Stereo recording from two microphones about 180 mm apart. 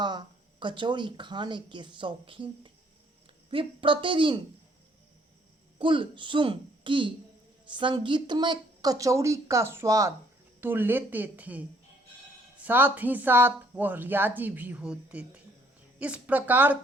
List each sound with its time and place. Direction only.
0.0 s speech: 25° right (ahead or behind)
5.8 s speech: 25° right (ahead or behind); by 16.7 s 10° right (ahead or behind)